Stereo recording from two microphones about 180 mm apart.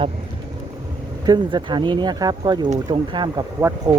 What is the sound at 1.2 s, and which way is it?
Speech, 25° right (ahead or behind).